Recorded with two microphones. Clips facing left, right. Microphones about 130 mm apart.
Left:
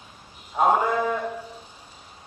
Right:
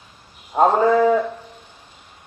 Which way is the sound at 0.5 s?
50° right (ahead or behind).